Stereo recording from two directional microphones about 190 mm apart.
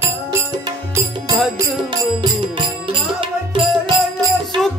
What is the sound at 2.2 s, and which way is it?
Music, 25° right (ahead or behind).